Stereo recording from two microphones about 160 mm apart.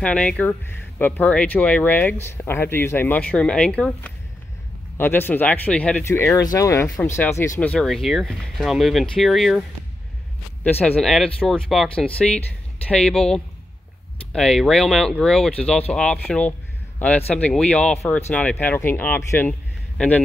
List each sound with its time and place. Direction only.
0.0 s speech: 5° left (ahead or behind)
7.6 s speech: 5° left (ahead or behind)
10.6 s speech: 10° left (ahead or behind)